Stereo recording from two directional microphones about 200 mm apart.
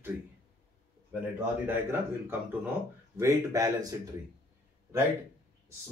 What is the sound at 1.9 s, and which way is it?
Speech, 10° right (ahead or behind).